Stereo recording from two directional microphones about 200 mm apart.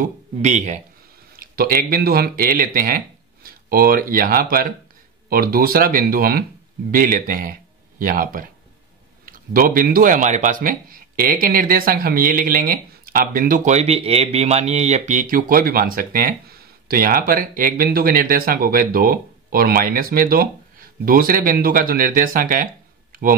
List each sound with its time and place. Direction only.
0.0 s speech: 35° right (ahead or behind)
1.3 s speech: 50° right (ahead or behind)